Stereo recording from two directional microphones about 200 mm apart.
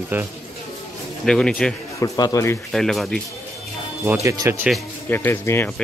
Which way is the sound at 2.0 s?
15° left (ahead or behind).